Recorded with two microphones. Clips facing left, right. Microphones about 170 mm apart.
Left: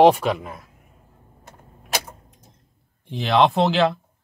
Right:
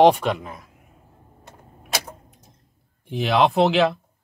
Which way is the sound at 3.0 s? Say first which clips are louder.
Left 1 dB; 5° right (ahead or behind).